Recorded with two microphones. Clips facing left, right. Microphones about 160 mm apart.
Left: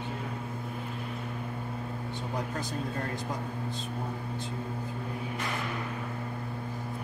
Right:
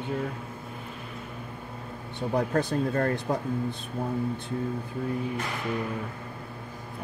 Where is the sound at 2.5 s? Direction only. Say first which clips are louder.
Right 9 dB; 60° right (ahead or behind).